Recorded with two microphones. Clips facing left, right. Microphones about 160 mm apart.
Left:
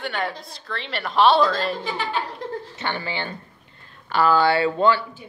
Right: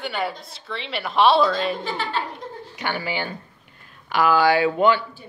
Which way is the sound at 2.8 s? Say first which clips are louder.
Right 5 dB; 10° right (ahead or behind).